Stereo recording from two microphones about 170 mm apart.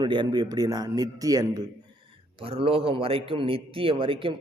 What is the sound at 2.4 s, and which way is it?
A man's voice, 35° right (ahead or behind).